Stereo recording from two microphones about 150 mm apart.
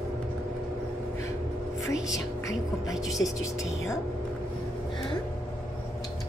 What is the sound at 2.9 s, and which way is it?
Speech, centre (ahead or behind).